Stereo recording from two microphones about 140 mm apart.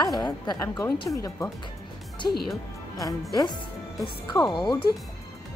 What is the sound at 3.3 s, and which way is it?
A woman's voice, 30° left (ahead or behind).